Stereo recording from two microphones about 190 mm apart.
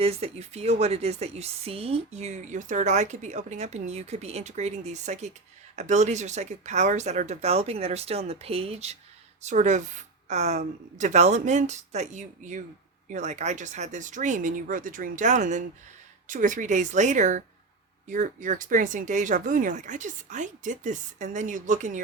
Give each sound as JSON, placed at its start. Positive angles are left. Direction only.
{"t": 0.0, "sound": "a woman's voice", "side_deg": -35}